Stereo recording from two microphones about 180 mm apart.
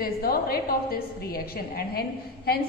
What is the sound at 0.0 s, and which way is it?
A woman's voice, 55° left (ahead or behind).